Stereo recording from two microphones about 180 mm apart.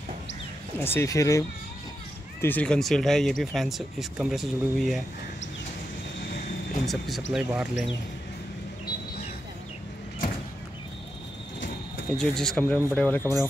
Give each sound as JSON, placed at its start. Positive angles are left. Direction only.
{"t": 0.7, "sound": "speech", "side_deg": 10}
{"t": 2.4, "sound": "speech", "side_deg": 10}
{"t": 6.9, "sound": "speech", "side_deg": 0}
{"t": 12.2, "sound": "speech", "side_deg": 5}